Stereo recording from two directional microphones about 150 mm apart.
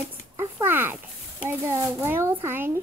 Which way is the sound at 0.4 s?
15° right (ahead or behind).